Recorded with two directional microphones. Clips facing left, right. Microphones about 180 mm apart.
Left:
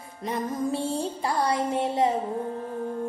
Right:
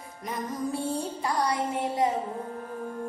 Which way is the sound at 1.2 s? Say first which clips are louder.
Left 2 dB; 30° left (ahead or behind).